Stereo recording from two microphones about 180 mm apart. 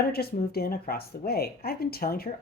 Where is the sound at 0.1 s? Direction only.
60° left (ahead or behind).